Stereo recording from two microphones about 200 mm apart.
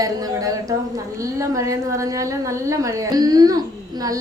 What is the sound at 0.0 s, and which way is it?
A woman's voice, 15° right (ahead or behind).